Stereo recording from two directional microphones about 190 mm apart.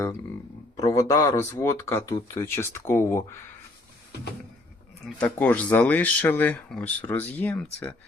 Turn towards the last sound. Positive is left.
turn(degrees=5)  # may be behind; listen again after turning